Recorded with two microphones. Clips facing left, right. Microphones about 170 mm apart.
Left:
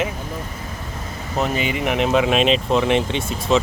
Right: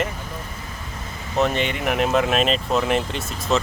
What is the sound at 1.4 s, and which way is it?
Speech, 5° left (ahead or behind).